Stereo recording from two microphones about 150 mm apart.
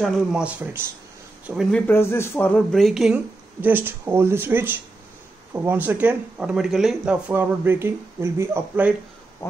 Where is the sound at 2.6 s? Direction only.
Centre (ahead or behind); by 8.9 s 15° right (ahead or behind).